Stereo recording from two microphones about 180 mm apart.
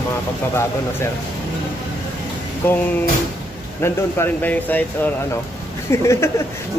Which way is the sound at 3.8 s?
15° left (ahead or behind).